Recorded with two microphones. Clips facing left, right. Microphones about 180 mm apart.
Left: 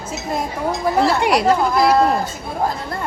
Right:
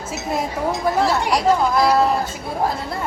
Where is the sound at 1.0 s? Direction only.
65° left (ahead or behind).